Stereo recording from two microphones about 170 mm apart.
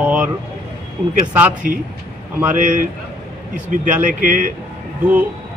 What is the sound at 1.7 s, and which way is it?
A man's voice, 55° right (ahead or behind).